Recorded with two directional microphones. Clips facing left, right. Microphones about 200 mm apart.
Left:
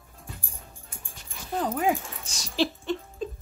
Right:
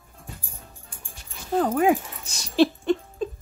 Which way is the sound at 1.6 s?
55° right (ahead or behind).